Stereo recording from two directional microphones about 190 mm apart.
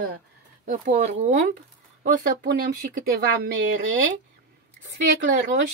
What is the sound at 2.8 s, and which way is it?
Speech, 50° right (ahead or behind).